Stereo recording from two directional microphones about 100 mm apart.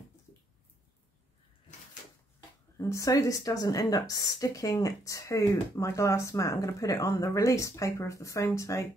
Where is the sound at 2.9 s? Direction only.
35° left (ahead or behind).